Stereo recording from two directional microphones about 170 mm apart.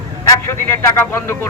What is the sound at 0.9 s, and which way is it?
Speech, 15° left (ahead or behind).